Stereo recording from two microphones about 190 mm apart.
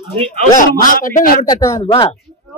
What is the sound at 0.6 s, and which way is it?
Speech, 45° left (ahead or behind).